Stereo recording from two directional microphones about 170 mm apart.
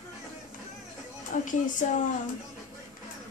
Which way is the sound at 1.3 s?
45° left (ahead or behind).